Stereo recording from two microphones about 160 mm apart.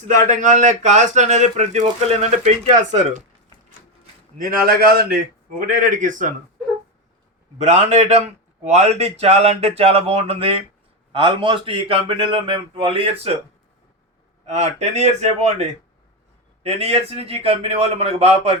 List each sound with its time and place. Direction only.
0.2 s speech: 50° right (ahead or behind)
4.4 s a man's voice: 65° right (ahead or behind)
7.6 s speech: 45° right (ahead or behind)
14.4 s speech: 45° right (ahead or behind)
16.6 s speech: 40° right (ahead or behind)